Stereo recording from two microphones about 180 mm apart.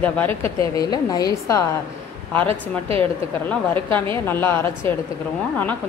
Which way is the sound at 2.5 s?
30° right (ahead or behind).